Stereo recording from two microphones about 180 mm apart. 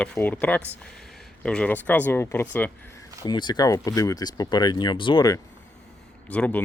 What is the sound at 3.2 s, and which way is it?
Speech, 25° left (ahead or behind).